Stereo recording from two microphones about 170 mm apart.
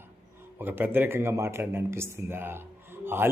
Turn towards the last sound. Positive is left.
turn(degrees=-15)  # may be behind; listen again after turning